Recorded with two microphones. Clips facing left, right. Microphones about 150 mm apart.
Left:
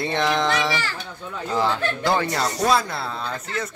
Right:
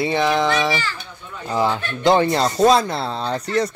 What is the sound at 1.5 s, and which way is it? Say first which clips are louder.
Speech: right 2 dB; 15° right (ahead or behind).